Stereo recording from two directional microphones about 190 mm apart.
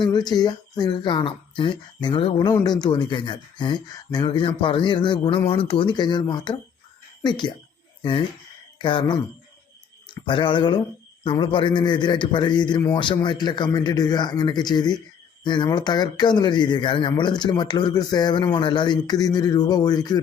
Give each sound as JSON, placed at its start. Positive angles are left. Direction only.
{"t": 0.0, "sound": "speech", "side_deg": 20}
{"t": 8.8, "sound": "speech", "side_deg": 25}
{"t": 10.2, "sound": "speech", "side_deg": 25}